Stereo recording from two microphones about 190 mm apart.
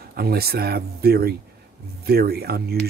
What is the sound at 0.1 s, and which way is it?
Speech, 55° right (ahead or behind).